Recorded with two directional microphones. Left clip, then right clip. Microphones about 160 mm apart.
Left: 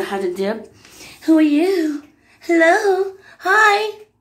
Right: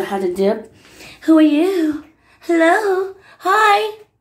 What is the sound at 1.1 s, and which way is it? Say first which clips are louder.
A woman's voice: right 2 dB; 5° right (ahead or behind).